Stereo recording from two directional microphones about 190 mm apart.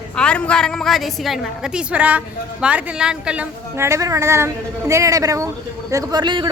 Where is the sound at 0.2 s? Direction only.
5° left (ahead or behind).